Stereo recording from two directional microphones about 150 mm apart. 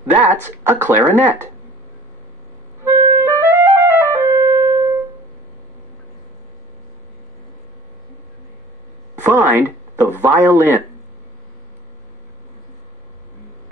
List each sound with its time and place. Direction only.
0.7 s speech: 15° right (ahead or behind)
2.8 s clarinet: 15° right (ahead or behind)
9.2 s speech: 15° right (ahead or behind)